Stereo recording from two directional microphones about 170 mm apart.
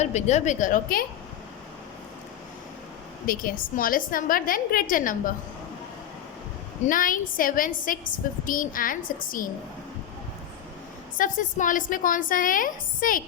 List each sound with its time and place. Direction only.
0.0 s a woman's voice: 40° left (ahead or behind)
3.2 s a woman's voice: 55° left (ahead or behind)
6.8 s a woman's voice: 50° left (ahead or behind)
11.2 s a woman's voice: 50° left (ahead or behind)